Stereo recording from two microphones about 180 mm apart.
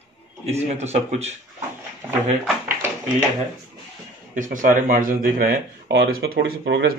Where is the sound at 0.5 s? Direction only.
35° right (ahead or behind).